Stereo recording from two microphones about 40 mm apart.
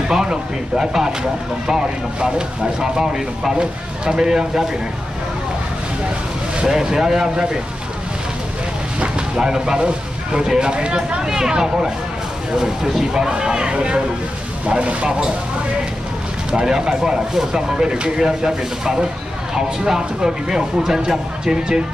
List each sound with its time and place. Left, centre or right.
0.1 s speech: centre
6.6 s speech: centre
9.4 s speech: centre
15.0 s speech: centre
16.5 s speech: centre